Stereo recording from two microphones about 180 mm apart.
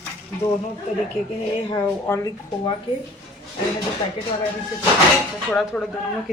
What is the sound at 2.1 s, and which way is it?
Speech, 20° left (ahead or behind).